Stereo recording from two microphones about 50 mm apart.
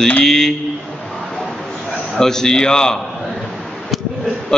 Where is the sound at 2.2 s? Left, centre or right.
Centre.